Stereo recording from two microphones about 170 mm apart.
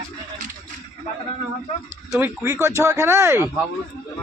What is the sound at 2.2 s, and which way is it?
Speech, 15° right (ahead or behind).